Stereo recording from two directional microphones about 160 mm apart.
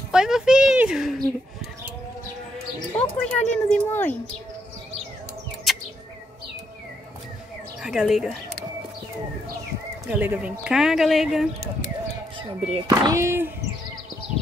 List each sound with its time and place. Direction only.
0.1 s a sound: 5° right (ahead or behind)
3.0 s speech: 45° left (ahead or behind)
3.6 s speech: 10° left (ahead or behind)
5.7 s bird: centre (ahead or behind)
7.8 s speech: 5° right (ahead or behind)
10.0 s speech: 10° right (ahead or behind)
12.4 s speech: 35° right (ahead or behind)
12.8 s speech: 25° right (ahead or behind)